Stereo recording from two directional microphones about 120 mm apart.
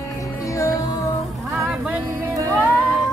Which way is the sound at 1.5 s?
20° right (ahead or behind).